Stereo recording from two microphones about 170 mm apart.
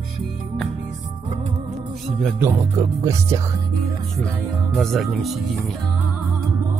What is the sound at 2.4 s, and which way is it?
Speech, 15° right (ahead or behind).